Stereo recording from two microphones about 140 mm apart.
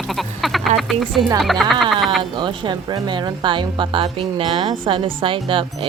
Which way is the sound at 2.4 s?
35° right (ahead or behind).